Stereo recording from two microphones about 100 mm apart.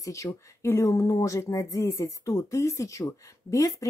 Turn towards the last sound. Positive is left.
turn(degrees=35)  # may be behind; listen again after turning